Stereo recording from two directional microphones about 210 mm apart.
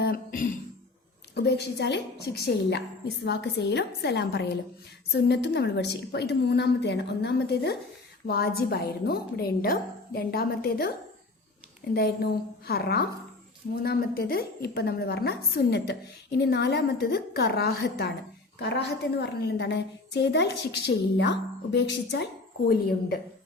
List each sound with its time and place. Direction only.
0.0 s music: 45° left (ahead or behind)
1.4 s a woman's voice: 55° left (ahead or behind)
11.9 s a woman's voice: 50° left (ahead or behind)